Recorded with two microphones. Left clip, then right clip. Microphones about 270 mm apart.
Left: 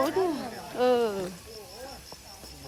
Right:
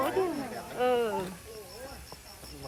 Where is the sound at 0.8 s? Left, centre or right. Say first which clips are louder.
Left 3 dB; left.